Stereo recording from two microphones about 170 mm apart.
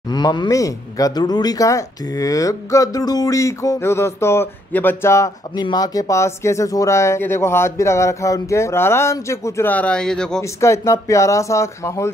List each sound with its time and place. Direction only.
0.1 s speech: 25° left (ahead or behind); by 10.4 s 5° left (ahead or behind)
10.4 s speech: 15° left (ahead or behind)